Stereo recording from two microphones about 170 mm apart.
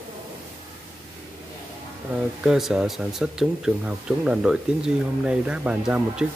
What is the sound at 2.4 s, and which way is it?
Speech, centre (ahead or behind).